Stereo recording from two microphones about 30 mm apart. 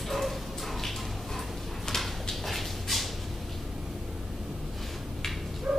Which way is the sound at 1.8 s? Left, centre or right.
Centre.